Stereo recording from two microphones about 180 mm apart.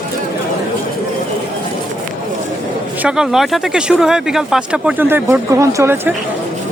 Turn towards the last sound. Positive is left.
turn(degrees=-15)  # may be behind; listen again after turning